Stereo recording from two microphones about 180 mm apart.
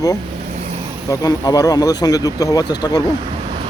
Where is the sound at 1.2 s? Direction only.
20° left (ahead or behind).